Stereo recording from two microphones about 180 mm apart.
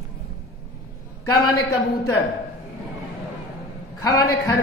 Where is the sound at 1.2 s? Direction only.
20° left (ahead or behind).